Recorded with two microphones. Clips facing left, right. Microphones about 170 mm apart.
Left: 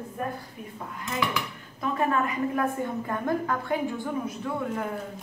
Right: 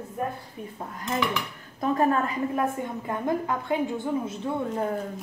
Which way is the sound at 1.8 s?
40° right (ahead or behind).